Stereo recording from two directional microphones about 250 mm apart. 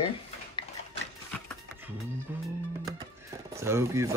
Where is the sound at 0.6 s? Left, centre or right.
Centre.